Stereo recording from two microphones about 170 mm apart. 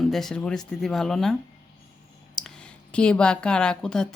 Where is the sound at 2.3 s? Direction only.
5° left (ahead or behind).